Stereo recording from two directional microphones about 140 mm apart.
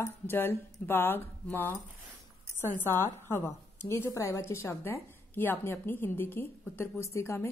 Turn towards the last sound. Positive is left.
turn(degrees=20)  # may be behind; listen again after turning